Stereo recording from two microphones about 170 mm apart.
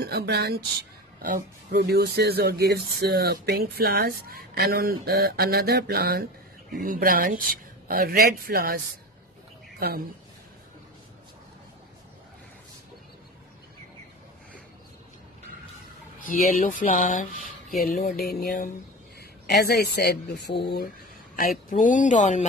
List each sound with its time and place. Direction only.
0.0 s speech: 75° right (ahead or behind)
1.2 s speech: 60° right (ahead or behind)
6.8 s speech: 55° right (ahead or behind)
9.8 s speech: 65° right (ahead or behind)
16.3 s speech: 50° left (ahead or behind)
17.4 s a sound: centre (ahead or behind)
17.8 s music: 55° left (ahead or behind)
19.4 s speech: 75° left (ahead or behind)
21.6 s speech: 50° left (ahead or behind)